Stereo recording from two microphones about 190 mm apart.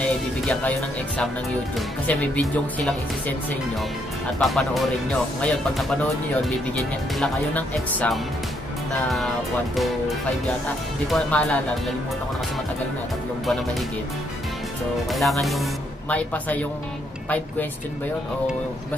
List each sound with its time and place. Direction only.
0.0 s speech: 5° left (ahead or behind)
4.4 s speech: centre (ahead or behind)
9.8 s speech: centre (ahead or behind)
15.0 s speech: centre (ahead or behind)